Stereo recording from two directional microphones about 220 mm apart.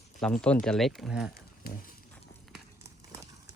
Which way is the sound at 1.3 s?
45° left (ahead or behind).